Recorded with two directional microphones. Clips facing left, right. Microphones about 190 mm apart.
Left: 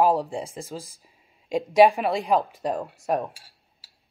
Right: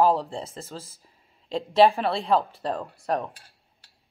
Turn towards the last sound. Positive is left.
turn(degrees=10)  # may be behind; listen again after turning